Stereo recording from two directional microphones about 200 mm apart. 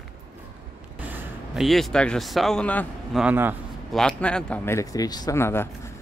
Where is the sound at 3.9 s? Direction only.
5° left (ahead or behind).